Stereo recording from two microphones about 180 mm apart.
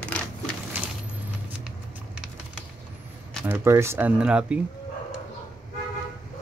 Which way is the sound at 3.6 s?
15° right (ahead or behind).